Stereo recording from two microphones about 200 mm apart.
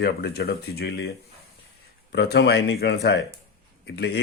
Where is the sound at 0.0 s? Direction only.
50° left (ahead or behind).